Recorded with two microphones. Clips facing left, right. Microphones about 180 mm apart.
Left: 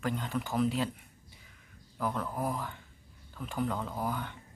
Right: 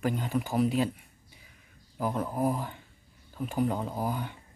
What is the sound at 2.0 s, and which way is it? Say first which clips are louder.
Speech: right 4 dB; 15° right (ahead or behind).